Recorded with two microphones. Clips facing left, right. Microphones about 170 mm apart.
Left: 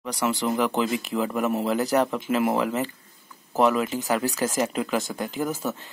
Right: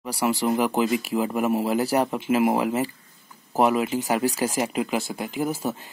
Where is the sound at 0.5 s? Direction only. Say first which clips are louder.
Right 2 dB; 10° right (ahead or behind).